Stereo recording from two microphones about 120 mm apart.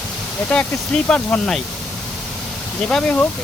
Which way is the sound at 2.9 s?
5° left (ahead or behind).